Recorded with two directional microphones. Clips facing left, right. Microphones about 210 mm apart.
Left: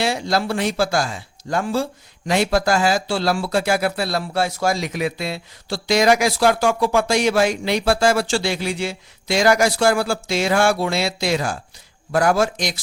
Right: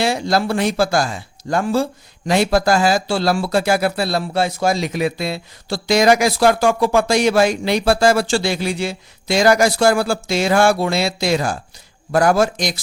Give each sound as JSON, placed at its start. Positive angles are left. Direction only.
{"t": 0.0, "sound": "speech", "side_deg": -45}